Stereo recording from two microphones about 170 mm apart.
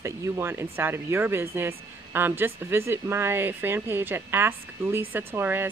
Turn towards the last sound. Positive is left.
turn(degrees=-15)  # may be behind; listen again after turning